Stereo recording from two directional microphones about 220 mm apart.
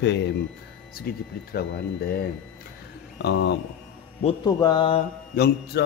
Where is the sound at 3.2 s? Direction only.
50° left (ahead or behind).